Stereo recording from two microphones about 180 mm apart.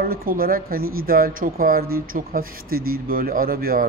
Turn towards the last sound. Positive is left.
turn(degrees=-55)  # may be behind; listen again after turning